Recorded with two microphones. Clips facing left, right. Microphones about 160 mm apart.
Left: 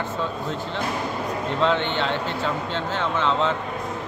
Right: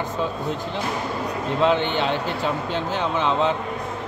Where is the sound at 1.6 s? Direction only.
15° right (ahead or behind).